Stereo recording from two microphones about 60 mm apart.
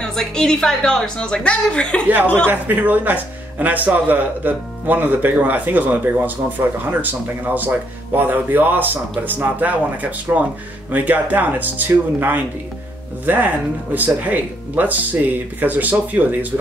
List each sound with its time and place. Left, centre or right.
0.0 s a woman's voice: centre
2.5 s speech: right